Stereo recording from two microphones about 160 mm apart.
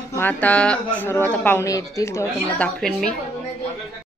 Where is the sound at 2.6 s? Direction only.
5° left (ahead or behind).